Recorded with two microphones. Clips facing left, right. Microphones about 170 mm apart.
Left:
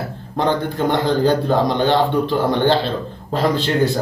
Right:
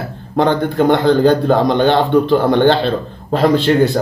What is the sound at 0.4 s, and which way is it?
Speech, 65° right (ahead or behind).